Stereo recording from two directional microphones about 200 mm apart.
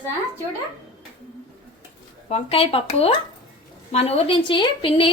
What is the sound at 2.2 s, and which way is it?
A woman's voice, 30° left (ahead or behind).